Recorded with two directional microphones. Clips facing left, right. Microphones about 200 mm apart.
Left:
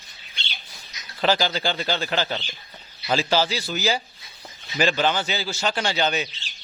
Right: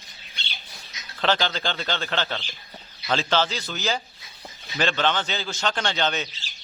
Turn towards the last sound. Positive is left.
turn(degrees=10)  # may be behind; listen again after turning